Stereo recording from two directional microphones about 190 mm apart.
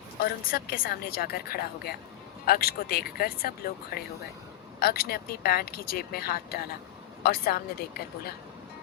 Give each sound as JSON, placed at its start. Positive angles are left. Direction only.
{"t": 0.4, "sound": "speech", "side_deg": 50}